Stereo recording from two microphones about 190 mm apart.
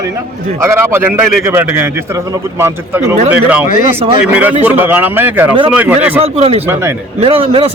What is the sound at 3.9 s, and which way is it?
Speech, 30° right (ahead or behind).